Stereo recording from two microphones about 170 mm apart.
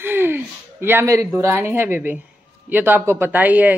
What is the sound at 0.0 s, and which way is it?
A woman's voice, 10° right (ahead or behind).